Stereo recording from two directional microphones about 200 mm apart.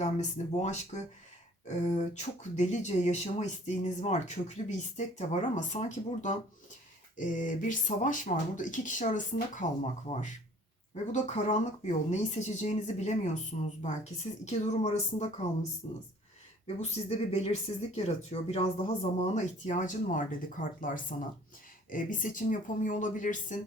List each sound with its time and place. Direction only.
0.0 s speech: 35° left (ahead or behind)
10.9 s speech: 35° left (ahead or behind)